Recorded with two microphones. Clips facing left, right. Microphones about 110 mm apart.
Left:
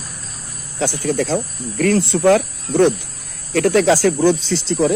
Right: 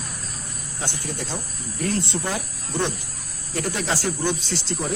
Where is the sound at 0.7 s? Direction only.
90° left.